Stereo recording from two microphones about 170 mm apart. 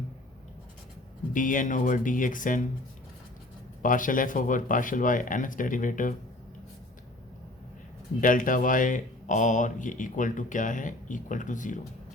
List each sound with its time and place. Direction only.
1.3 s speech: 50° left (ahead or behind)
3.8 s speech: 50° left (ahead or behind)
8.2 s speech: 55° left (ahead or behind)